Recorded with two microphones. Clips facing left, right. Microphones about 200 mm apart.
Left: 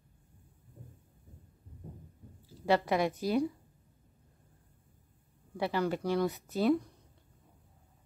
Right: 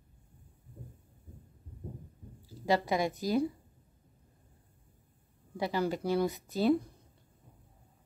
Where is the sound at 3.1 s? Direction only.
35° right (ahead or behind).